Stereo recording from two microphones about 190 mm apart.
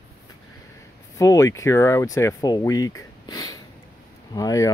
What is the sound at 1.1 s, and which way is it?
Speech, 20° left (ahead or behind).